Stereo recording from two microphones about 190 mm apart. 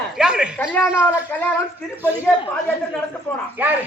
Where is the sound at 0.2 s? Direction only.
5° right (ahead or behind).